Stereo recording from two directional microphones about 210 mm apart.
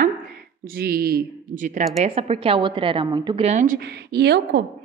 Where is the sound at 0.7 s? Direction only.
45° right (ahead or behind).